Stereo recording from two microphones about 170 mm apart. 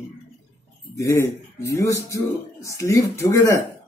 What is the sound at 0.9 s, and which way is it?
Speech, 15° left (ahead or behind).